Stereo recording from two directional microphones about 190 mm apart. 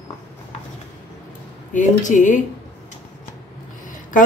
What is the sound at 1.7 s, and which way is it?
Speech, 40° left (ahead or behind).